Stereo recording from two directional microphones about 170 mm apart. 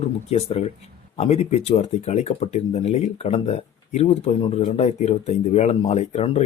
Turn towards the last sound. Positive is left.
turn(degrees=40)  # may be behind; listen again after turning